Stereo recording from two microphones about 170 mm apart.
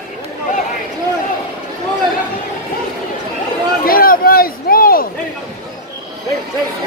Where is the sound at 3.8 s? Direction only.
60° left (ahead or behind).